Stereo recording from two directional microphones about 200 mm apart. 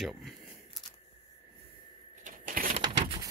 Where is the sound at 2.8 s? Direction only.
20° right (ahead or behind).